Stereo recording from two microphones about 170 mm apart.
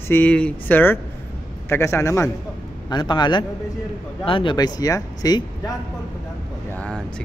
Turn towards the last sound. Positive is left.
turn(degrees=5)  # may be behind; listen again after turning